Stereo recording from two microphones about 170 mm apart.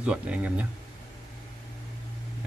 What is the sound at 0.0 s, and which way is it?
Speech, 10° right (ahead or behind).